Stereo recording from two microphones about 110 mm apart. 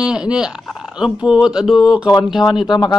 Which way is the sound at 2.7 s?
40° left (ahead or behind).